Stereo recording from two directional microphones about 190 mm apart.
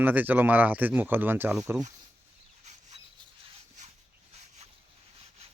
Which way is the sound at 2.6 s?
35° right (ahead or behind).